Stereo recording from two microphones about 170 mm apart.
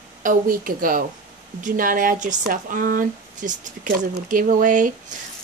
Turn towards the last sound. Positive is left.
turn(degrees=-50)  # may be behind; listen again after turning